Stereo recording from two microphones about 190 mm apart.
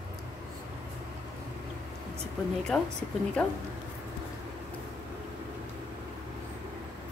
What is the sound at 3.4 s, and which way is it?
Speech, 5° left (ahead or behind).